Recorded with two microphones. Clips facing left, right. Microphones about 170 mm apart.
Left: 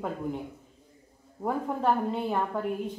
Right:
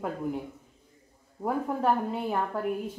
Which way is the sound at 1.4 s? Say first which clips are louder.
Even; 5° right (ahead or behind).